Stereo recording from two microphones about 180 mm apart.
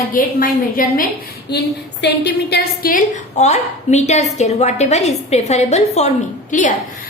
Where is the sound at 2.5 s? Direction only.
60° left (ahead or behind).